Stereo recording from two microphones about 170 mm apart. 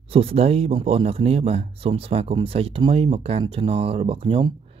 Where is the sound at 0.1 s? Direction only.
35° right (ahead or behind).